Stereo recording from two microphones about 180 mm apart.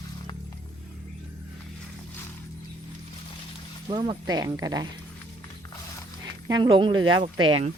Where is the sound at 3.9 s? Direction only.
25° right (ahead or behind).